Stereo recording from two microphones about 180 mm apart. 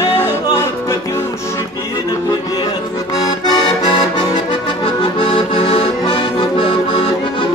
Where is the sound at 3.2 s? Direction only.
20° left (ahead or behind).